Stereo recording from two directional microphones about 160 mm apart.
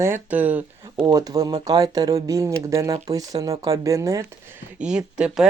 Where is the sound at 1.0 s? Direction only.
25° right (ahead or behind).